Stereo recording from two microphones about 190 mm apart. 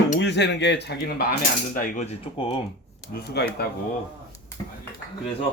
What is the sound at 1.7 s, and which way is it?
Speech, 40° left (ahead or behind).